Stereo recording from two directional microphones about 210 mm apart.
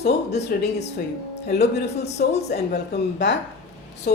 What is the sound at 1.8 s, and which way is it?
Speech, 30° left (ahead or behind).